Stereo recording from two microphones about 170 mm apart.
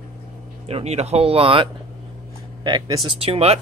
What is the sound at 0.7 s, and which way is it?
Speech, 35° right (ahead or behind).